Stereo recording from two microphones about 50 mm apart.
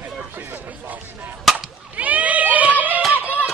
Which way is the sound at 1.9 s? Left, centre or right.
Right.